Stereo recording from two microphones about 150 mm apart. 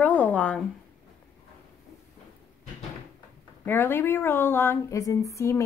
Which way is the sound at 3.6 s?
15° left (ahead or behind).